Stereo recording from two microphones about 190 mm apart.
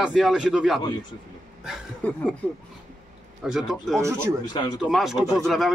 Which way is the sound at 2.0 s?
10° left (ahead or behind).